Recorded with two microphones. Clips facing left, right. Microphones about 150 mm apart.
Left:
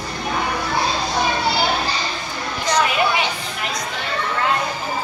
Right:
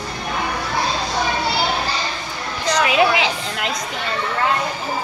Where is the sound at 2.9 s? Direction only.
90° right.